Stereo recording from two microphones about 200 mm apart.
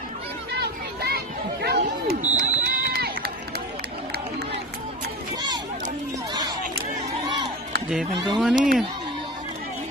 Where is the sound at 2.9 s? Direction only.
50° right (ahead or behind).